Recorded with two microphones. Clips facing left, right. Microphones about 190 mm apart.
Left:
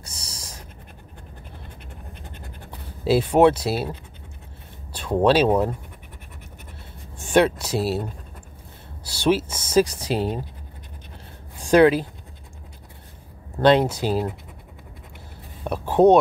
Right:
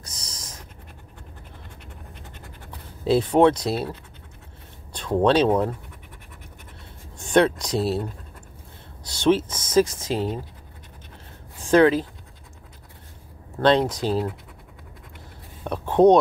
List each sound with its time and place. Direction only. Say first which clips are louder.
0.0 s a sound: left 1 dB; 30° left (ahead or behind)
3.0 s speech: left 1 dB; 10° left (ahead or behind)
4.9 s speech: left 1 dB; 10° left (ahead or behind)
7.2 s a sound: even; 10° left (ahead or behind)
7.6 s speech: even; 5° left (ahead or behind)
9.0 s speech: right 1 dB; 10° left (ahead or behind)
11.6 s speech: left 1 dB; 15° left (ahead or behind)
13.7 s speech: left 2 dB; 10° left (ahead or behind)
15.6 s a sound: even; 10° left (ahead or behind)